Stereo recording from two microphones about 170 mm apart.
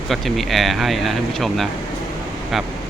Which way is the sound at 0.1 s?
Centre (ahead or behind).